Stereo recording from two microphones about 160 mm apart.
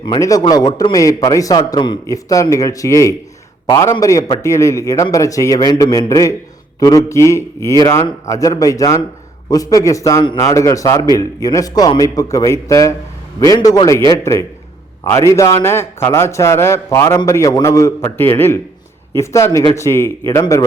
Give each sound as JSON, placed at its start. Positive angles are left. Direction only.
{"t": 0.0, "sound": "a man's voice", "side_deg": 25}